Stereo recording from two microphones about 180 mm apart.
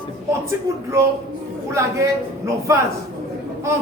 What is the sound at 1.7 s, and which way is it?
A woman's voice, 15° right (ahead or behind).